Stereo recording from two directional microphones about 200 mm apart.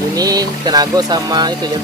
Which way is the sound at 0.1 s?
20° right (ahead or behind).